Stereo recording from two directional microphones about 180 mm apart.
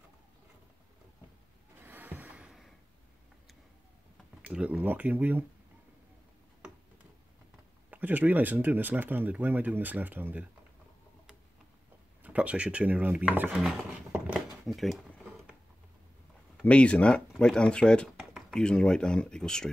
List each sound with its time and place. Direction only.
1.8 s a sound: 10° right (ahead or behind)
4.4 s speech: 5° right (ahead or behind)
7.9 s speech: 10° right (ahead or behind)
12.2 s speech: 5° right (ahead or behind)
16.6 s speech: 5° left (ahead or behind)